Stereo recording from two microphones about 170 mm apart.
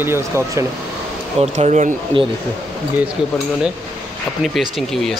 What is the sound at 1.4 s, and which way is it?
Speech, 40° right (ahead or behind).